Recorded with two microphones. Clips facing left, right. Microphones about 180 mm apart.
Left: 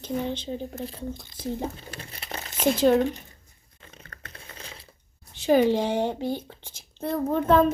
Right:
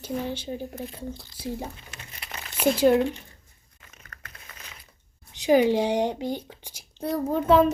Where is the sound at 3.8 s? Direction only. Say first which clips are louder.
Left 3 dB; 30° left (ahead or behind).